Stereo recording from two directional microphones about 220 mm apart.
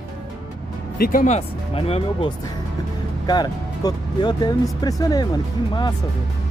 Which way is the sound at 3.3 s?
20° left (ahead or behind).